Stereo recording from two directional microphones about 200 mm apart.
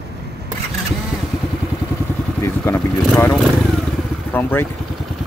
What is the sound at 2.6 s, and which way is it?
Speech, 10° left (ahead or behind).